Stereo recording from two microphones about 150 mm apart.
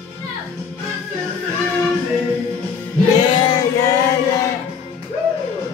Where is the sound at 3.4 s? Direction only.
25° left (ahead or behind).